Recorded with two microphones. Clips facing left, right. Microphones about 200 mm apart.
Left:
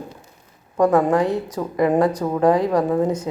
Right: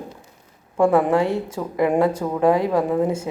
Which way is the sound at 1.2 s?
25° right (ahead or behind).